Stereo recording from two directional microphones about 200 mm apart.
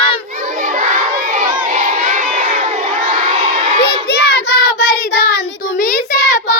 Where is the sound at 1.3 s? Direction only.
40° right (ahead or behind).